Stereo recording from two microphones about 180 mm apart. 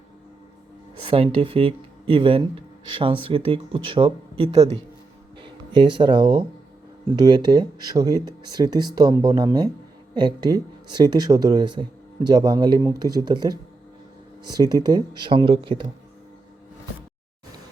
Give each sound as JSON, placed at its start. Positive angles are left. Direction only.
{"t": 1.0, "sound": "speech", "side_deg": -30}